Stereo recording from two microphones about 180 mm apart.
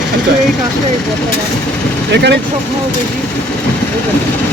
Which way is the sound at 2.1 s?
70° right (ahead or behind).